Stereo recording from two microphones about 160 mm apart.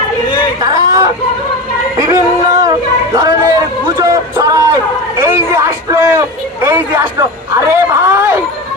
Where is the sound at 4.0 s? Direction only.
20° right (ahead or behind).